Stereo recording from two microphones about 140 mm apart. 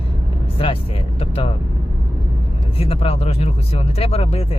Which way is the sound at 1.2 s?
45° left (ahead or behind).